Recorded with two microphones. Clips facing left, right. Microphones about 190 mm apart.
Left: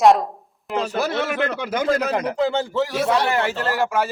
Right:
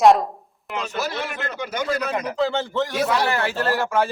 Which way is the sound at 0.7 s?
35° left (ahead or behind).